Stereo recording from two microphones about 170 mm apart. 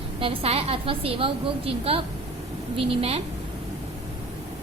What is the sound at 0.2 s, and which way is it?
A woman's voice, 35° right (ahead or behind).